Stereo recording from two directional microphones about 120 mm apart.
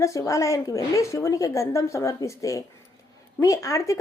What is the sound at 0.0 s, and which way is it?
Speech, 25° left (ahead or behind).